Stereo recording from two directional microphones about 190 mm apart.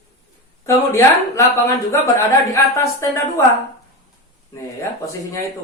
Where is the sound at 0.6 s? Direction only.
15° left (ahead or behind).